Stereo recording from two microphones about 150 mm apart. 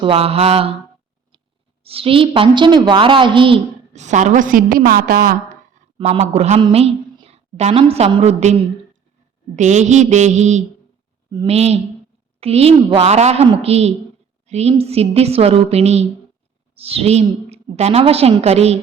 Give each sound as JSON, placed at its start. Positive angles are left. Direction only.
{"t": 0.0, "sound": "a woman's voice", "side_deg": -40}
{"t": 1.8, "sound": "a woman's voice", "side_deg": -40}
{"t": 3.9, "sound": "a woman's voice", "side_deg": -50}
{"t": 6.0, "sound": "a woman's voice", "side_deg": -45}